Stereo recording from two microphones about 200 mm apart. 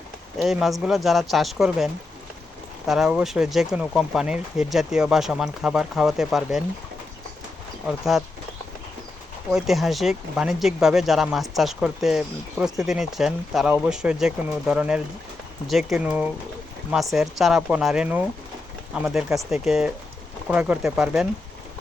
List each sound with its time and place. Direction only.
0.3 s speech: centre (ahead or behind)
7.9 s speech: centre (ahead or behind)
9.5 s speech: centre (ahead or behind)